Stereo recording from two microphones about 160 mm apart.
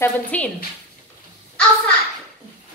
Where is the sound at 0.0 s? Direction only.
10° left (ahead or behind).